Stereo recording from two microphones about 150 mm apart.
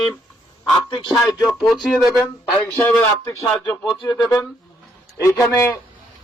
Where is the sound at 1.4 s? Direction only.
Centre (ahead or behind).